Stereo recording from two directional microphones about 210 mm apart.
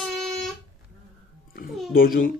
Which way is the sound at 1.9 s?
45° left (ahead or behind).